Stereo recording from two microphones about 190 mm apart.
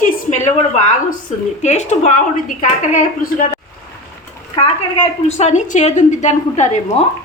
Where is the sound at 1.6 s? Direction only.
35° left (ahead or behind).